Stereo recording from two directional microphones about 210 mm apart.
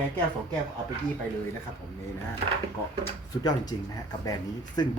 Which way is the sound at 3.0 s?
20° left (ahead or behind).